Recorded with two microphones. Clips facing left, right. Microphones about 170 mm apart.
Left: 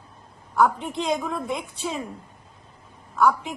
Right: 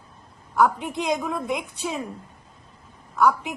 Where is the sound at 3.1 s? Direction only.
Centre (ahead or behind).